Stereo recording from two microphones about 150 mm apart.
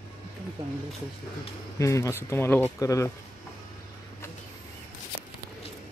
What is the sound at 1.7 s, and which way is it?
Speech, 20° left (ahead or behind).